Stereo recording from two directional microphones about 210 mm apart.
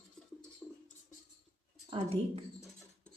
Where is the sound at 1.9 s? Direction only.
25° right (ahead or behind).